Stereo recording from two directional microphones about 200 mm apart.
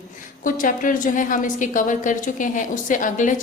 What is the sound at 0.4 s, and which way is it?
A woman's voice, 40° left (ahead or behind).